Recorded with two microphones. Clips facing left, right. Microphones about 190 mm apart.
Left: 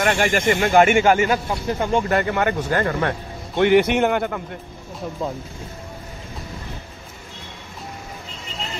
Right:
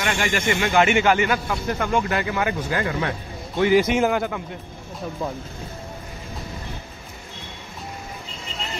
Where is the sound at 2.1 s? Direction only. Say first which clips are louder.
Left 4 dB; 55° left (ahead or behind).